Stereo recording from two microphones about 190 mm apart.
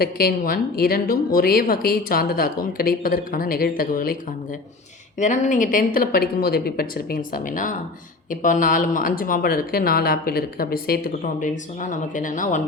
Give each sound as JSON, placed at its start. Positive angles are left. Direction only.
{"t": 0.0, "sound": "speech", "side_deg": 50}
{"t": 5.2, "sound": "speech", "side_deg": 40}